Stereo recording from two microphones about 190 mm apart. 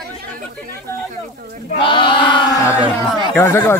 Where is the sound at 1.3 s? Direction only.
50° right (ahead or behind).